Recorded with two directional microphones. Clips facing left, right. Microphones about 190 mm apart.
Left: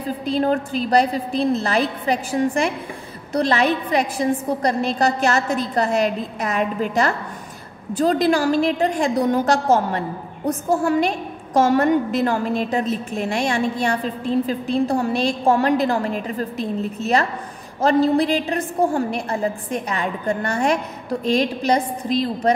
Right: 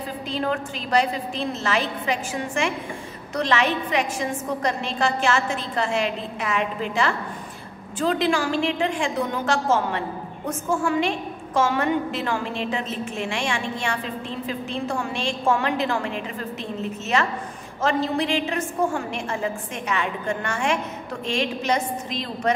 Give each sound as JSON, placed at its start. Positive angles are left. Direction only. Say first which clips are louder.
{"t": 0.3, "sound": "a woman's voice", "louder": "left 7 dB", "side_deg": 40}